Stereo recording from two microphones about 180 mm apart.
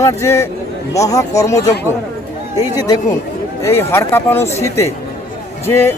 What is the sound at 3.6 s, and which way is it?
Speech, 15° left (ahead or behind).